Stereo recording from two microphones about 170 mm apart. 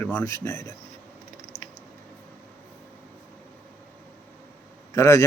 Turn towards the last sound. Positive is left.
turn(degrees=15)  # may be behind; listen again after turning